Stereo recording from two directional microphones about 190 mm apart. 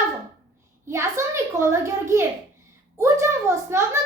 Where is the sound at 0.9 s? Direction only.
15° right (ahead or behind).